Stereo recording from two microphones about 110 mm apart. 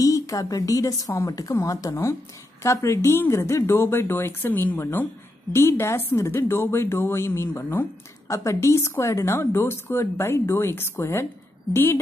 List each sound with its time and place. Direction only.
0.0 s a woman's voice: 30° left (ahead or behind)